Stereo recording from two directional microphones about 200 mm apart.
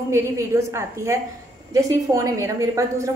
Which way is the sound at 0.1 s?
15° right (ahead or behind).